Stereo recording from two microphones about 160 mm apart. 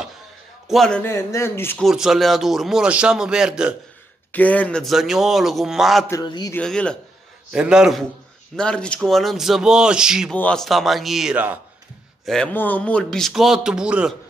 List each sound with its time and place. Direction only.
0.7 s a man's voice: 5° left (ahead or behind)
1.0 s a man's voice: 15° left (ahead or behind)
1.8 s a man's voice: centre (ahead or behind)
4.3 s a man's voice: 10° left (ahead or behind)
6.2 s a man's voice: 25° left (ahead or behind)
6.5 s a man's voice: 5° left (ahead or behind)
7.5 s a man's voice: 5° right (ahead or behind)
10.3 s a man's voice: 5° left (ahead or behind); by 11.6 s 10° right (ahead or behind)
12.3 s a man's voice: 5° left (ahead or behind)